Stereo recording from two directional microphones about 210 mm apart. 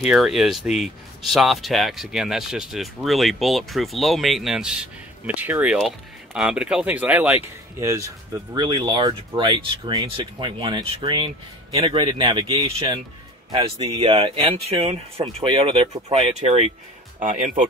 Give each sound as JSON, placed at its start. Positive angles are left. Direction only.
{"t": 0.0, "sound": "speech", "side_deg": 0}